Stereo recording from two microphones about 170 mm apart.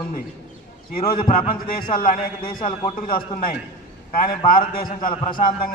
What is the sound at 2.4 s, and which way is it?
Speech, 30° left (ahead or behind).